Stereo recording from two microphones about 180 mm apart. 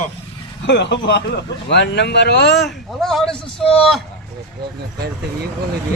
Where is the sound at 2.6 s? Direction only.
Centre (ahead or behind).